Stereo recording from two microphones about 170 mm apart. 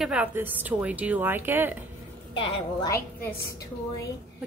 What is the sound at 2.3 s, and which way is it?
Speech, 30° left (ahead or behind).